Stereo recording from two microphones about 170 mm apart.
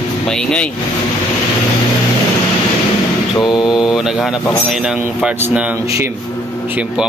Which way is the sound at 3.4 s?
25° left (ahead or behind).